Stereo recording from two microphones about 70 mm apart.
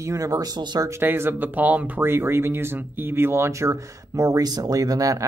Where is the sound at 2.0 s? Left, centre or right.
Right.